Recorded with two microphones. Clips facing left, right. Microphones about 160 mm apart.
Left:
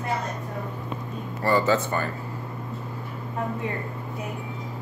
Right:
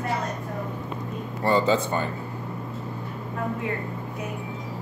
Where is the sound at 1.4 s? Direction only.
15° right (ahead or behind).